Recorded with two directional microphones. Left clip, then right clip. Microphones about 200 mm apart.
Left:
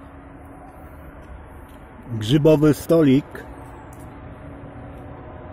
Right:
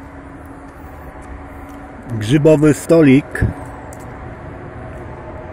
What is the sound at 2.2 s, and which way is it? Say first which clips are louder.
Speech: right 4 dB; 15° left (ahead or behind).